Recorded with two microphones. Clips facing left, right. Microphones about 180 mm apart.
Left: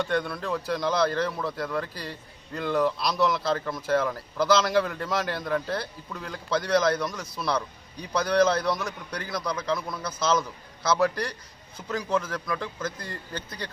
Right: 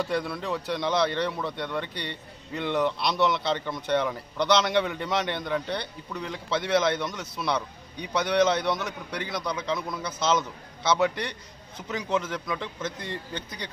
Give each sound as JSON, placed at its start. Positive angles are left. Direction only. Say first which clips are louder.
{"t": 0.0, "sound": "speech", "louder": "left 1 dB", "side_deg": 0}